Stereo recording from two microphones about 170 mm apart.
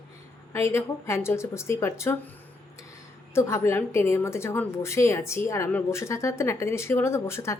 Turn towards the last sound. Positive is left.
turn(degrees=15)  # may be behind; listen again after turning